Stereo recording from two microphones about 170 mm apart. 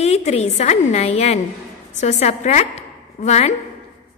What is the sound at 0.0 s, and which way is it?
A woman's voice, 40° left (ahead or behind).